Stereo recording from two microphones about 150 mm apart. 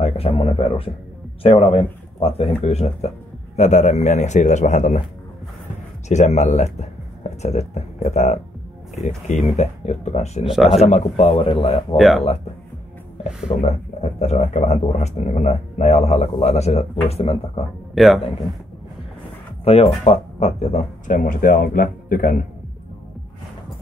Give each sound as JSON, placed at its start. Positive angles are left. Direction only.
{"t": 0.0, "sound": "a man's voice", "side_deg": 40}
{"t": 6.0, "sound": "speech", "side_deg": 50}
{"t": 10.4, "sound": "speech", "side_deg": 0}
{"t": 10.8, "sound": "a man's voice", "side_deg": 50}
{"t": 13.6, "sound": "speech", "side_deg": 50}
{"t": 17.9, "sound": "speech", "side_deg": 0}
{"t": 19.6, "sound": "speech", "side_deg": 40}